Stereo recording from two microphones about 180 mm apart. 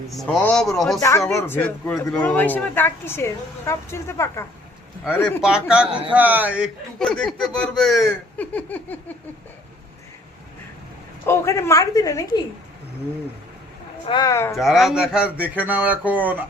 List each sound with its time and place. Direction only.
0.1 s speech: centre (ahead or behind)
0.9 s a woman's voice: 15° left (ahead or behind)
5.4 s speech: 5° right (ahead or behind)
7.0 s speech: 5° left (ahead or behind)
11.3 s a woman's voice: 15° left (ahead or behind)
14.0 s speech: 25° left (ahead or behind)
14.5 s speech: centre (ahead or behind)